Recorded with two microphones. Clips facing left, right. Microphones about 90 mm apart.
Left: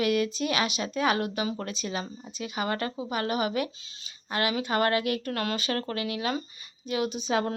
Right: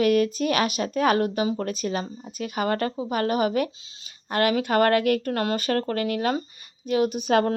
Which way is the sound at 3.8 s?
30° right (ahead or behind).